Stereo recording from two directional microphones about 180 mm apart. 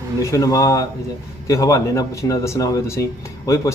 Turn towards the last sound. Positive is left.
turn(degrees=15)  # may be behind; listen again after turning